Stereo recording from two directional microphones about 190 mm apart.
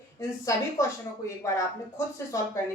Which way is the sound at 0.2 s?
15° left (ahead or behind).